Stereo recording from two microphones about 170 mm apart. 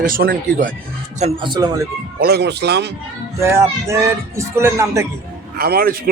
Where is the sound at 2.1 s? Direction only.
70° right (ahead or behind).